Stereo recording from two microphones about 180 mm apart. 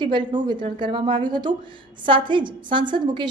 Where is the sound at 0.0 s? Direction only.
25° right (ahead or behind).